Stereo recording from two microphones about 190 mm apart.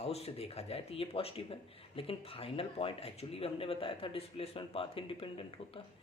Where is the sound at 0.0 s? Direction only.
35° left (ahead or behind).